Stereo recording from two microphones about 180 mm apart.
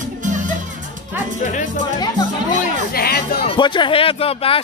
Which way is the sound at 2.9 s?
55° left (ahead or behind).